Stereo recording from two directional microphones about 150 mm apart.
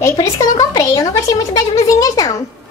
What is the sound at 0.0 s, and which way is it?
Speech, 20° left (ahead or behind).